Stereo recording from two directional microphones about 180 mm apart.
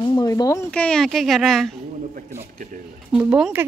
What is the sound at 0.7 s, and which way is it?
Speech, 5° left (ahead or behind).